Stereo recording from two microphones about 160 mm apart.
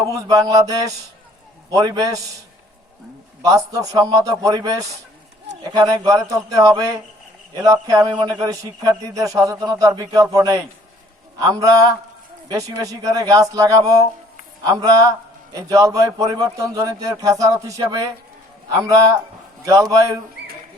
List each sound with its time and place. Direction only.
0.0 s a man's voice: 20° right (ahead or behind)
3.4 s a man's voice: 20° right (ahead or behind)
20.4 s a sound: 90° right